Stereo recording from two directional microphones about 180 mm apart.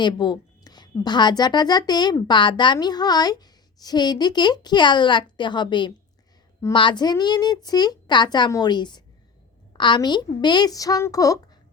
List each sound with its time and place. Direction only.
0.0 s a woman's voice: 25° left (ahead or behind)